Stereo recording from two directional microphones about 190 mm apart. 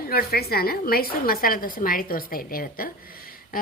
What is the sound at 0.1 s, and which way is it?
A woman's voice, 55° left (ahead or behind).